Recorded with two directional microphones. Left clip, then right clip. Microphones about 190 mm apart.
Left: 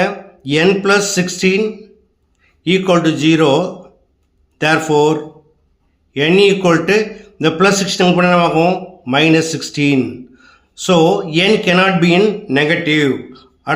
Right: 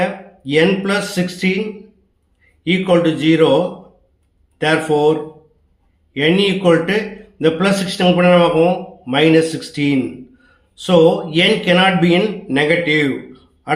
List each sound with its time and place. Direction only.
0.0 s speech: 35° left (ahead or behind)
2.6 s a man's voice: 35° left (ahead or behind)